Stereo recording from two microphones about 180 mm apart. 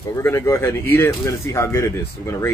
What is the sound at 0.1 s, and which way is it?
Speech, 15° left (ahead or behind).